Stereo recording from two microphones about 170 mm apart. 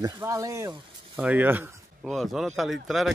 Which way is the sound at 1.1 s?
10° right (ahead or behind).